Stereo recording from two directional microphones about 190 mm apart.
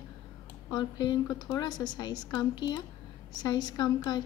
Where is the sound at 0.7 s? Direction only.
25° left (ahead or behind).